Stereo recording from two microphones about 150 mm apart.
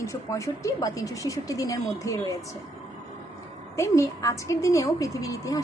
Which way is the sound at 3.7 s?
20° left (ahead or behind).